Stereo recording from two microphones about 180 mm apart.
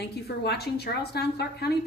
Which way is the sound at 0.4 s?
65° left (ahead or behind).